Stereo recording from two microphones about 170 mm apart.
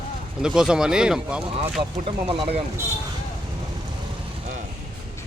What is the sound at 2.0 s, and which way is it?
Speech, 30° right (ahead or behind).